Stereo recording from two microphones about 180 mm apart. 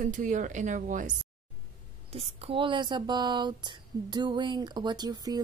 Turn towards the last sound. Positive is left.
turn(degrees=-20)  # may be behind; listen again after turning